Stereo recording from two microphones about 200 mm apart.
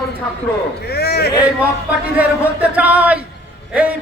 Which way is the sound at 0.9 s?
55° left (ahead or behind).